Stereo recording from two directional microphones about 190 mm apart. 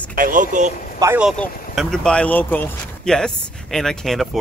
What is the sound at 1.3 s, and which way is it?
Speech, centre (ahead or behind).